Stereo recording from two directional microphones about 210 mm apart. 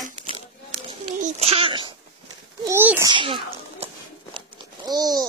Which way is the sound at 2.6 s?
10° right (ahead or behind).